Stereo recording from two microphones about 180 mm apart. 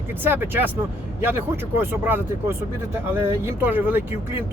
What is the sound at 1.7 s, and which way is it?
Speech, 10° right (ahead or behind).